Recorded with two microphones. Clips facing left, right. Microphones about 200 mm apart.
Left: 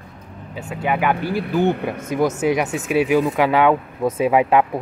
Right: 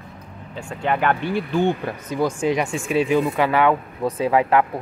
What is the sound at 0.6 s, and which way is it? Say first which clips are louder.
Speech: left 1 dB; 5° left (ahead or behind).